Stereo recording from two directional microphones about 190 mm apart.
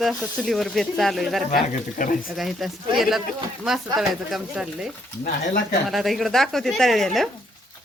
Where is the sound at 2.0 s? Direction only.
45° left (ahead or behind).